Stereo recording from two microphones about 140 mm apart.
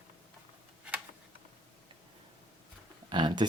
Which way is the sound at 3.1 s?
35° right (ahead or behind).